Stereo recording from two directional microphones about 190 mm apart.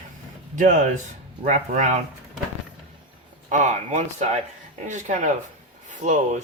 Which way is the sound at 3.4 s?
40° right (ahead or behind).